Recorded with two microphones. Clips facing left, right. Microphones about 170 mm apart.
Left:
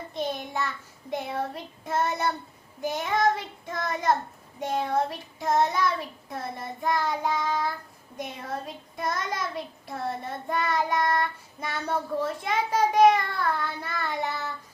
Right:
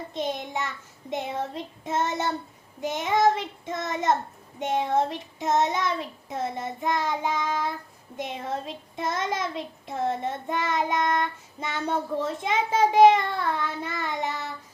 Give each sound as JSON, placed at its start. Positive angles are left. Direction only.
{"t": 0.1, "sound": "child singing", "side_deg": -20}